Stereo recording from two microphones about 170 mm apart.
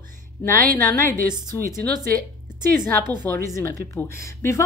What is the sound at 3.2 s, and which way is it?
Speech, 15° left (ahead or behind).